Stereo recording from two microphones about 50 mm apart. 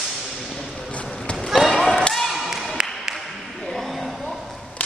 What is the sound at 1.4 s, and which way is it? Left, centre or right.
Basketball bounce, centre.